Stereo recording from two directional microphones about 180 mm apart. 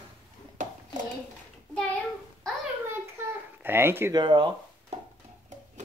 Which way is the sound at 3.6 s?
10° right (ahead or behind).